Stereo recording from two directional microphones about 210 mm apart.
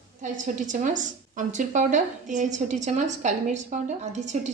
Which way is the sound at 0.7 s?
35° right (ahead or behind).